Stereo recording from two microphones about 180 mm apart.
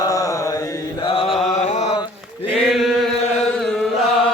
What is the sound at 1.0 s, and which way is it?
Mantra, 30° left (ahead or behind).